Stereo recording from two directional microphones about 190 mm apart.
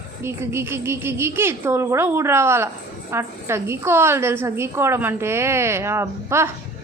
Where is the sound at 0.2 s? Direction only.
15° right (ahead or behind).